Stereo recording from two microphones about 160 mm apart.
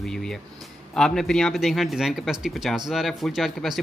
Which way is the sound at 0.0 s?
5° left (ahead or behind).